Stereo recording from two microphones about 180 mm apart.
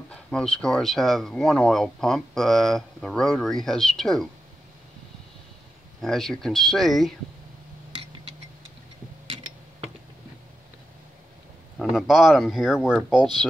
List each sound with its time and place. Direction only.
0.1 s speech: 5° left (ahead or behind)
5.9 s speech: centre (ahead or behind)
11.8 s speech: centre (ahead or behind)